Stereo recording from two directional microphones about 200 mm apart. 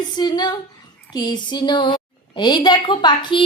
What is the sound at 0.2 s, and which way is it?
A woman's voice, 20° left (ahead or behind).